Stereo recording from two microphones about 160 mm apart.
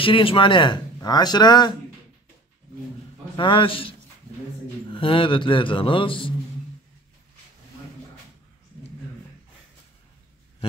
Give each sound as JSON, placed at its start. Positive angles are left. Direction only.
{"t": 0.0, "sound": "speech", "side_deg": 35}
{"t": 3.3, "sound": "speech", "side_deg": 30}
{"t": 4.9, "sound": "speech", "side_deg": 35}